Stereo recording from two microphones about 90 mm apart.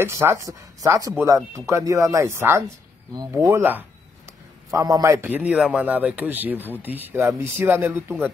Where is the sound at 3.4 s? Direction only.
25° right (ahead or behind).